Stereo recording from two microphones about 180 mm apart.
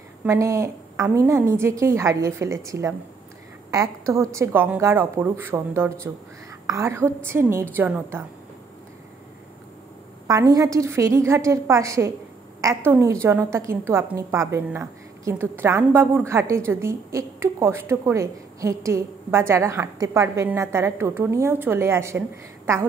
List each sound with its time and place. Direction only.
0.2 s a woman's voice: 15° right (ahead or behind)
10.2 s a woman's voice: 20° right (ahead or behind)